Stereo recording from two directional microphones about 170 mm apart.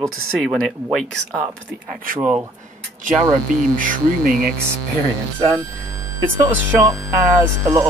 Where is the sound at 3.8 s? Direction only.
55° right (ahead or behind).